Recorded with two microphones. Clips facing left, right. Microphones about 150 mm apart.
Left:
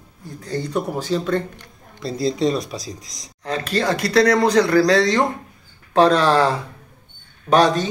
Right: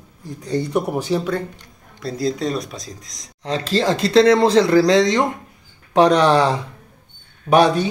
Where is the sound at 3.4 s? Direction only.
25° right (ahead or behind).